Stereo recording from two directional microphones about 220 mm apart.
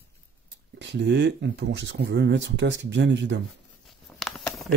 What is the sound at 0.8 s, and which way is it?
Speech, 55° right (ahead or behind).